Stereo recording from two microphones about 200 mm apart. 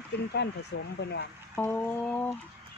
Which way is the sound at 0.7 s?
60° left (ahead or behind).